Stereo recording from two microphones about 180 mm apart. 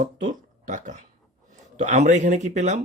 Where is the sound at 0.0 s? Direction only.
45° right (ahead or behind).